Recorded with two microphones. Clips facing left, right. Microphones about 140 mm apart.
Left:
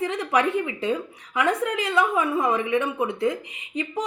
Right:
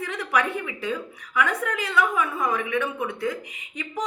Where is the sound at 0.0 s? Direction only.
25° left (ahead or behind).